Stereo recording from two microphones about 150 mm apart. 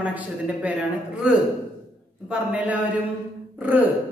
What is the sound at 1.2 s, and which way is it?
Speech, 5° right (ahead or behind).